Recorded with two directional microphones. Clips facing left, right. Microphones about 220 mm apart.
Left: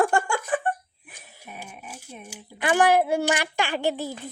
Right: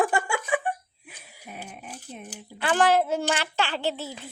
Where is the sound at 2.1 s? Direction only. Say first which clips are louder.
Right 1 dB; 10° left (ahead or behind).